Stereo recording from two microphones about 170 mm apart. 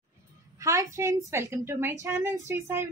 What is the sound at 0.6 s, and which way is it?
A woman's voice, 20° right (ahead or behind).